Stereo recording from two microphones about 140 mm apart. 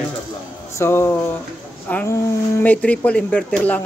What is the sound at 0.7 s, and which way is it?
A man's voice, 15° left (ahead or behind).